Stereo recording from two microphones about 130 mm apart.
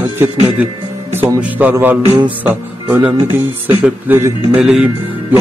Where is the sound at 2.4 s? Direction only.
15° right (ahead or behind).